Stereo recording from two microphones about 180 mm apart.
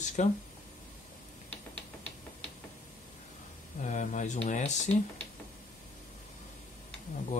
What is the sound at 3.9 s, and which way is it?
Speech, 45° left (ahead or behind).